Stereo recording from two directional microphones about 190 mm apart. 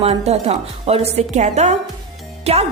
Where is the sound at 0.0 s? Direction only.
30° right (ahead or behind).